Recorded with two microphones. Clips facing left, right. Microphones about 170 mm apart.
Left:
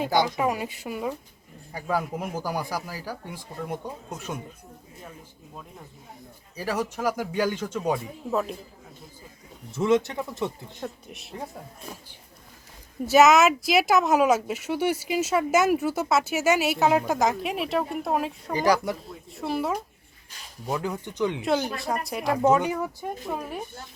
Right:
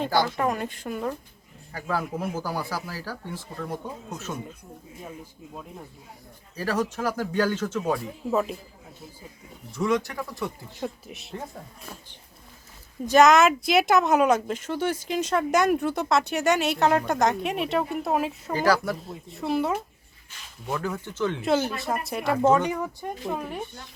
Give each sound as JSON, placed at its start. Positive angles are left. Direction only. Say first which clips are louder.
{"t": 0.0, "sound": "speech", "louder": "left 1 dB", "side_deg": 15}
{"t": 6.6, "sound": "speech", "louder": "right 1 dB", "side_deg": 10}
{"t": 8.3, "sound": "speech", "louder": "right 2 dB", "side_deg": 0}
{"t": 9.7, "sound": "speech", "louder": "left 3 dB", "side_deg": 25}
{"t": 10.8, "sound": "speech", "louder": "right 3 dB", "side_deg": -5}
{"t": 13.1, "sound": "speech", "louder": "even", "side_deg": 5}
{"t": 18.5, "sound": "speech", "louder": "even", "side_deg": 15}
{"t": 18.9, "sound": "speech", "louder": "right 2 dB", "side_deg": 0}
{"t": 20.7, "sound": "speech", "louder": "left 1 dB", "side_deg": 15}
{"t": 21.8, "sound": "speech", "louder": "even", "side_deg": 0}